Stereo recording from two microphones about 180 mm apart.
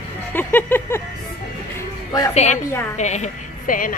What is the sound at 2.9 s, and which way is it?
A woman's voice, 40° left (ahead or behind).